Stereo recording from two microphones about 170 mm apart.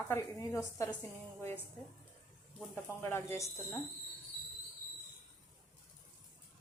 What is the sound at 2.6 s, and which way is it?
Speech, 10° left (ahead or behind).